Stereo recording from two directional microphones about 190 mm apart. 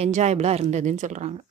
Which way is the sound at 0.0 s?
35° right (ahead or behind).